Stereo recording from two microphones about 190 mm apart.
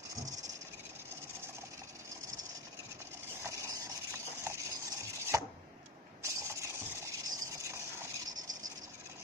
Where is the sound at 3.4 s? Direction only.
15° right (ahead or behind).